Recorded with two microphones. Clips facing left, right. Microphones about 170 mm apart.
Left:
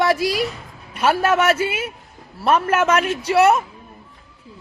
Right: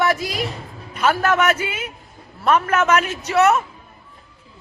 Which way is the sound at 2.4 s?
30° left (ahead or behind).